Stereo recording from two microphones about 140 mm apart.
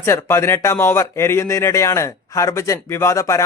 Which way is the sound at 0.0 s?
20° left (ahead or behind).